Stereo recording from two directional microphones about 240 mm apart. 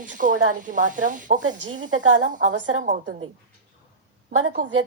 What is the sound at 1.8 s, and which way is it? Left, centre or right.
Speech, right.